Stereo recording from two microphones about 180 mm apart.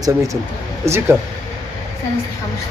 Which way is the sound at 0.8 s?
15° right (ahead or behind).